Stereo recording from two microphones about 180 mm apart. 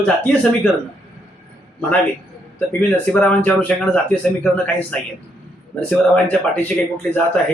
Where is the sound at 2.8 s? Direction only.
5° left (ahead or behind).